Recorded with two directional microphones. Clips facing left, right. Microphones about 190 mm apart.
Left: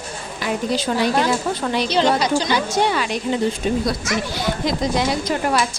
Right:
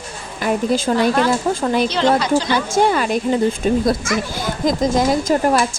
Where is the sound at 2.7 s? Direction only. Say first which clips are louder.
Right 4 dB; 50° right (ahead or behind).